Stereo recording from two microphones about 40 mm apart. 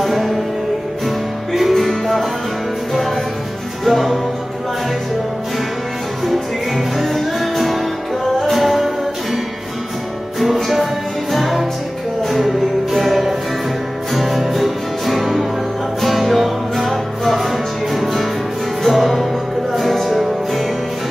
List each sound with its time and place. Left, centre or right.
0.0 s music: centre
3.8 s music: centre
7.0 s music: centre
10.4 s music: centre